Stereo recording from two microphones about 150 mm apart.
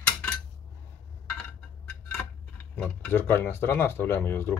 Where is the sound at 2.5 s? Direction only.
10° left (ahead or behind).